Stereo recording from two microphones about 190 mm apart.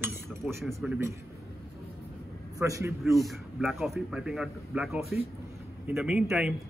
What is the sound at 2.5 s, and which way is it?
Speech, 15° right (ahead or behind).